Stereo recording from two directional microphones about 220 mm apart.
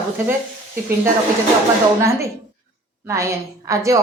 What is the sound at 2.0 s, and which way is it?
Speech, 15° right (ahead or behind).